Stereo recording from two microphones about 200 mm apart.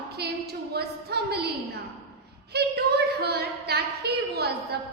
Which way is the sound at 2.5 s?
55° right (ahead or behind).